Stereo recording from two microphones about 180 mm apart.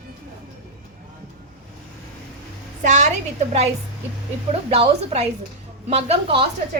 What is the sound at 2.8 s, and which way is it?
Speech, 45° right (ahead or behind).